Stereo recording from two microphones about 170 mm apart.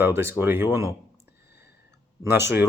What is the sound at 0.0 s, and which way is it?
Speech, 15° right (ahead or behind).